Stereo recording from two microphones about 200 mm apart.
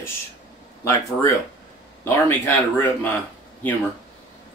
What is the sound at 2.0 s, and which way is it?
Speech, 10° left (ahead or behind).